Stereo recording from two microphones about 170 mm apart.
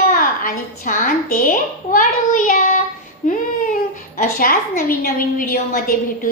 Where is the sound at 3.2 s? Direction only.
50° left (ahead or behind).